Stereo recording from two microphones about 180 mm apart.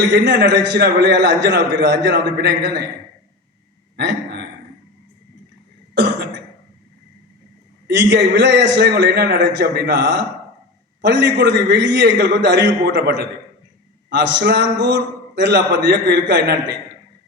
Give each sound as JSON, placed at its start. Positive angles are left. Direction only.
{"t": 0.3, "sound": "a man's voice", "side_deg": -75}
{"t": 3.9, "sound": "a sound", "side_deg": -65}
{"t": 5.9, "sound": "cough", "side_deg": -75}
{"t": 7.9, "sound": "a man's voice", "side_deg": -75}